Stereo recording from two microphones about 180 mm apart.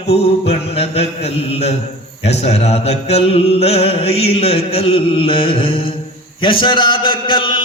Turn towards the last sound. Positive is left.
turn(degrees=25)  # may be behind; listen again after turning